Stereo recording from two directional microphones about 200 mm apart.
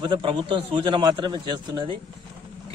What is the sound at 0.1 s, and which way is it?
Speech, 25° right (ahead or behind).